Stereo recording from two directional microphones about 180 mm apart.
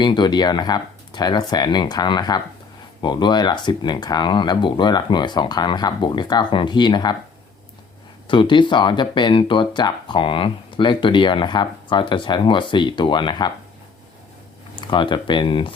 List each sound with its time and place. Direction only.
0.0 s speech: 25° left (ahead or behind)
8.3 s speech: 25° left (ahead or behind)
14.8 s speech: 25° left (ahead or behind)